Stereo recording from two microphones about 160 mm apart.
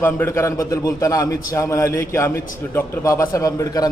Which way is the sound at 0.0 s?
15° left (ahead or behind).